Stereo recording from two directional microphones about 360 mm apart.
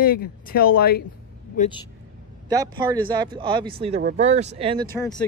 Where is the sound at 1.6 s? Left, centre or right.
Centre.